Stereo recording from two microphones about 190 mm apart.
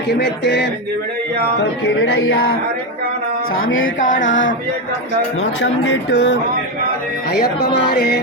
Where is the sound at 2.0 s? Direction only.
90° left.